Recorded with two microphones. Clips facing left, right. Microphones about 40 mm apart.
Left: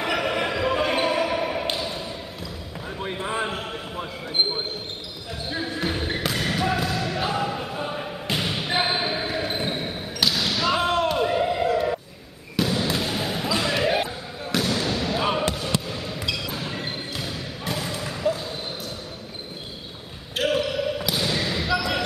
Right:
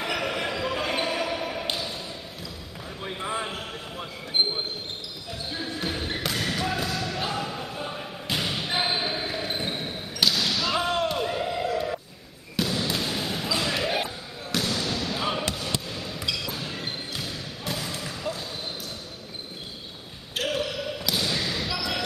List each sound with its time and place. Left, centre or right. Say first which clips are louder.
0.0 s basketball bounce: left 4 dB; centre
3.3 s basketball bounce: left 3 dB; centre
5.5 s basketball bounce: left 4 dB; centre
11.1 s a sound: left 5 dB; centre
12.5 s basketball bounce: left 3 dB; centre
15.9 s music: left 2 dB; centre
20.3 s basketball bounce: left 5 dB; centre